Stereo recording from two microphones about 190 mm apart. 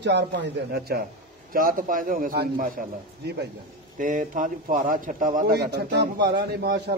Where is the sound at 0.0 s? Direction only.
65° right (ahead or behind).